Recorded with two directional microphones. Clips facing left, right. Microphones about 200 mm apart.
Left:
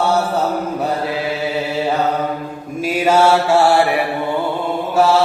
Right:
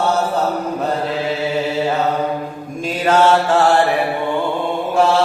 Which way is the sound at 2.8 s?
10° left (ahead or behind).